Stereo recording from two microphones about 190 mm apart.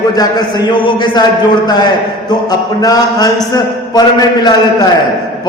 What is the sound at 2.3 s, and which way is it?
A man's voice, 20° left (ahead or behind).